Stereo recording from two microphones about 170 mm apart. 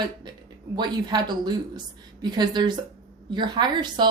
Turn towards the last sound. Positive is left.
turn(degrees=-25)  # may be behind; listen again after turning